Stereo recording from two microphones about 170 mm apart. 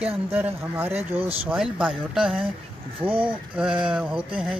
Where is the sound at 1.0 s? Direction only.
35° right (ahead or behind).